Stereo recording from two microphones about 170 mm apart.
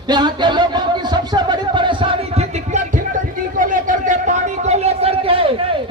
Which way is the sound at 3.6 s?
55° right (ahead or behind).